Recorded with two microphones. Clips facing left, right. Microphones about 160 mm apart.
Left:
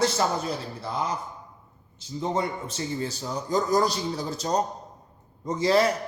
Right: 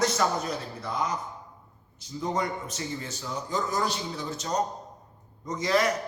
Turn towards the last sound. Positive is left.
turn(degrees=30)  # may be behind; listen again after turning